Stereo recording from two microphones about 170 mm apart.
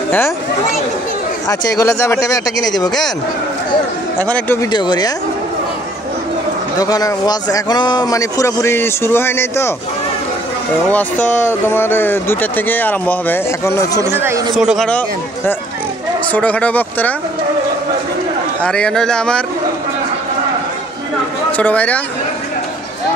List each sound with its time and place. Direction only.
1.5 s speech: 20° left (ahead or behind)
4.3 s speech: 10° left (ahead or behind)
4.6 s speech: 25° left (ahead or behind)
6.8 s speech: 20° left (ahead or behind)
10.9 s speech: 10° left (ahead or behind)
14.1 s speech: 15° right (ahead or behind)
14.5 s speech: centre (ahead or behind)
14.9 s speech: 10° left (ahead or behind)
18.6 s speech: 5° left (ahead or behind)
21.5 s speech: 10° left (ahead or behind)